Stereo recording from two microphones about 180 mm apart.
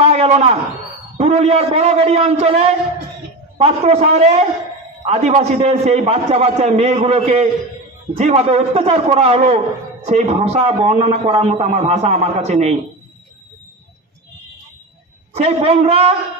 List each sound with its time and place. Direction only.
0.0 s a man's voice: 35° right (ahead or behind)
15.3 s a man's voice: 35° right (ahead or behind)